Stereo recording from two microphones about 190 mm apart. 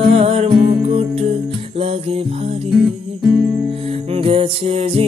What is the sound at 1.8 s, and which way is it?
Music, 30° right (ahead or behind).